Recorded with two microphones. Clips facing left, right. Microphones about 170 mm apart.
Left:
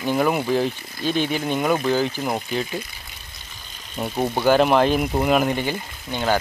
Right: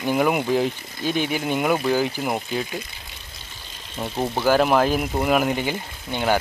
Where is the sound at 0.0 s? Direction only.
10° right (ahead or behind).